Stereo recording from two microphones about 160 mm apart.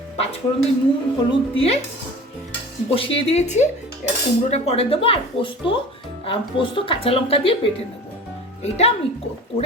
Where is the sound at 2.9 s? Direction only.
35° left (ahead or behind).